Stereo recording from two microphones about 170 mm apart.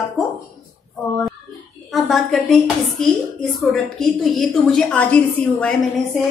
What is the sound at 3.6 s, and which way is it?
A woman's voice, centre (ahead or behind).